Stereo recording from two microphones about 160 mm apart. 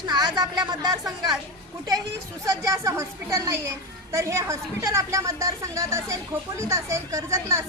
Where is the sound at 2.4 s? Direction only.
20° right (ahead or behind).